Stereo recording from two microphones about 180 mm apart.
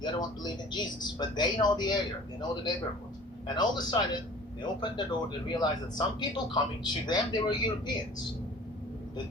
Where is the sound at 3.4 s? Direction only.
25° left (ahead or behind).